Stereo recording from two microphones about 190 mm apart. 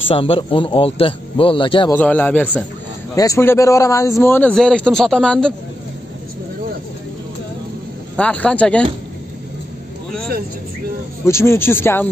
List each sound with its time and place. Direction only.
0.1 s a man's voice: 30° left (ahead or behind)
2.0 s a man's voice: 10° left (ahead or behind)
8.2 s a man's voice: 5° left (ahead or behind)
11.2 s a man's voice: 15° left (ahead or behind)